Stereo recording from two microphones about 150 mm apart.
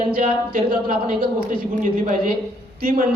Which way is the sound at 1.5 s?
55° right (ahead or behind).